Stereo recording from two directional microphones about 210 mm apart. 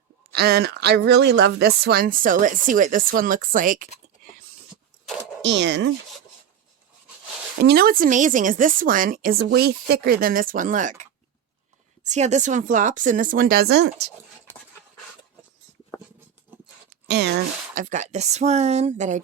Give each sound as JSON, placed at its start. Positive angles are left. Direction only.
{"t": 0.3, "sound": "speech", "side_deg": -50}
{"t": 5.4, "sound": "speech", "side_deg": -55}
{"t": 7.6, "sound": "speech", "side_deg": -50}
{"t": 16.5, "sound": "a sound", "side_deg": -10}
{"t": 17.1, "sound": "speech", "side_deg": -55}
{"t": 17.7, "sound": "speech", "side_deg": -35}